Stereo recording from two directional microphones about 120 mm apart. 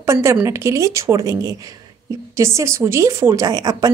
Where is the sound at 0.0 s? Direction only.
25° right (ahead or behind).